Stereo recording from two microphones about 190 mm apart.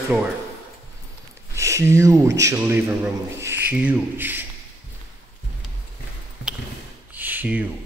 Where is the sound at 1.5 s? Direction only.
15° right (ahead or behind).